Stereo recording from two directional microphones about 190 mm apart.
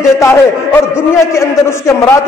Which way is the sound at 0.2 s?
15° left (ahead or behind).